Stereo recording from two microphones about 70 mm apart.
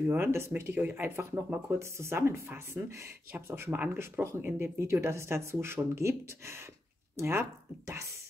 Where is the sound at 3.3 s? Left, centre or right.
Right.